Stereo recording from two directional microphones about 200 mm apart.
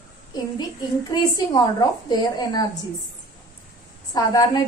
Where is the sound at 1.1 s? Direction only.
20° left (ahead or behind).